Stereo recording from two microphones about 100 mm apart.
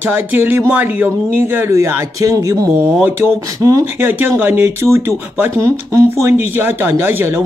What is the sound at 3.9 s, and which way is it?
Speech, 20° right (ahead or behind).